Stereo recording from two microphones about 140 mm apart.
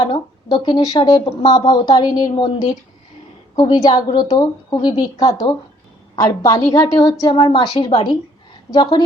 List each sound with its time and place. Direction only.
0.0 s a woman's voice: 35° left (ahead or behind)
7.3 s speech: 40° left (ahead or behind)